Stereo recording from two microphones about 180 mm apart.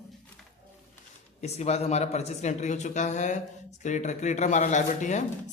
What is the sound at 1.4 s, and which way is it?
Speech, 40° left (ahead or behind).